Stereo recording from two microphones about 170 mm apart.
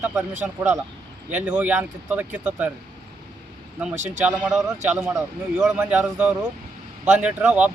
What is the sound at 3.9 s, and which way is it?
Speech, 45° right (ahead or behind).